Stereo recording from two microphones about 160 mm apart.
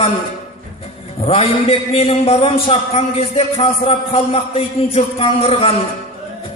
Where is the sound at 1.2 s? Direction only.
35° left (ahead or behind).